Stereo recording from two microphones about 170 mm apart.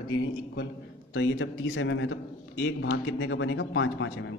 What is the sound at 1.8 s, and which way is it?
A man's voice, 90° left.